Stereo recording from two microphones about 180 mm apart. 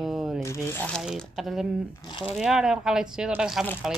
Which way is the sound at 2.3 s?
5° right (ahead or behind).